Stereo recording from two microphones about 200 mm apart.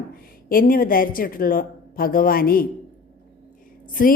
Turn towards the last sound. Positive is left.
turn(degrees=45)  # may be behind; listen again after turning